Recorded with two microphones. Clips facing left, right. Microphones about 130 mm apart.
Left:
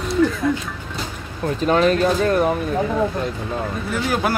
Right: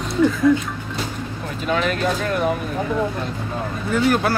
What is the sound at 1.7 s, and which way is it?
Speech, 40° left (ahead or behind).